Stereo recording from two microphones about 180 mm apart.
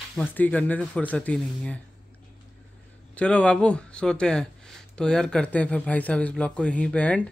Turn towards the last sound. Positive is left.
turn(degrees=10)  # may be behind; listen again after turning